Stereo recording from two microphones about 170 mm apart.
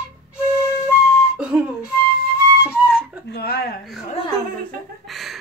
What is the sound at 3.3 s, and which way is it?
Speech, 70° left (ahead or behind).